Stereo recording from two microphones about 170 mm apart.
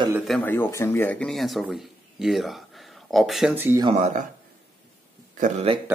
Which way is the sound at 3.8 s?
40° right (ahead or behind).